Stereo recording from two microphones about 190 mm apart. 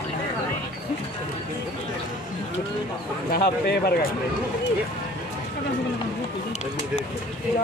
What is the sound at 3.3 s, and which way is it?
Speech, 55° left (ahead or behind).